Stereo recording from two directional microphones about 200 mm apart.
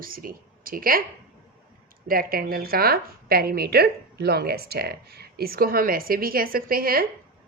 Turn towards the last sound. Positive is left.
turn(degrees=-45)  # may be behind; listen again after turning